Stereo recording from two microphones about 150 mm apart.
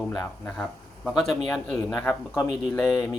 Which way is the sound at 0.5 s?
Centre (ahead or behind).